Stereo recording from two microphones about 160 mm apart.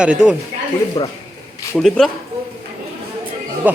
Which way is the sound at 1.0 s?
25° left (ahead or behind).